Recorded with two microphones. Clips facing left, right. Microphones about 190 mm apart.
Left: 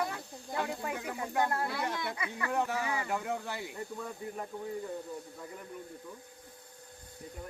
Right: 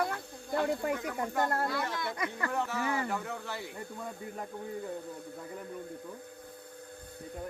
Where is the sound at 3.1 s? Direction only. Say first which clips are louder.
Left 2 dB; 15° left (ahead or behind).